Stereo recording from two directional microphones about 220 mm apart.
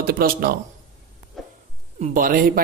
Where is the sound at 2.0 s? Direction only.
40° right (ahead or behind).